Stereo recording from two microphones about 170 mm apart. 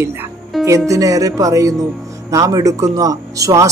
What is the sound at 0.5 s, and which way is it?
Music, centre (ahead or behind).